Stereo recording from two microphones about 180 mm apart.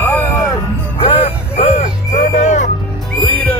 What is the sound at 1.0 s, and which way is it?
Music, 35° left (ahead or behind).